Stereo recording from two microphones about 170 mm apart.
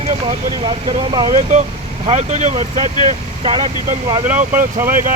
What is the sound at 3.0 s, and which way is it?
Speech, 30° right (ahead or behind).